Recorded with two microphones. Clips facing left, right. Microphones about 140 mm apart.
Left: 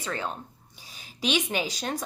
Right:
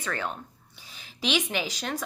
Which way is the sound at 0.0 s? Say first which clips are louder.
Even; 30° left (ahead or behind).